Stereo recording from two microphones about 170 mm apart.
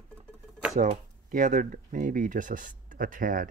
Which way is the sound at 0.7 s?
50° right (ahead or behind).